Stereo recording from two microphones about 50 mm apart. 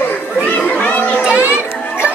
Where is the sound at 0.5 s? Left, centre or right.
Left.